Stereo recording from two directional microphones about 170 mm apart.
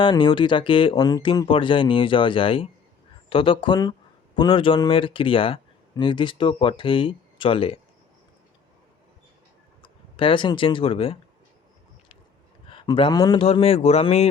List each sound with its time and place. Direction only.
0.0 s speech: 30° left (ahead or behind)
9.8 s speech: 30° left (ahead or behind)
12.6 s speech: 30° left (ahead or behind)
13.4 s speech: 35° left (ahead or behind)